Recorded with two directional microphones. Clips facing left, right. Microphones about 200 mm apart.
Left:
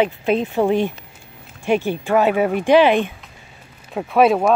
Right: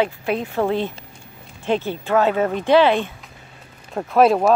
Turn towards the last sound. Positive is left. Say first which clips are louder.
# even
turn(degrees=0)  # may be behind; listen again after turning